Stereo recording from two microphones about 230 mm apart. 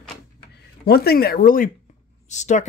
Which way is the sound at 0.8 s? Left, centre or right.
Left.